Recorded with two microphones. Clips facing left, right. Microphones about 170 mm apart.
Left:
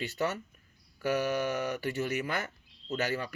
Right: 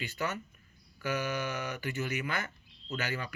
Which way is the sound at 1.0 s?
40° left (ahead or behind).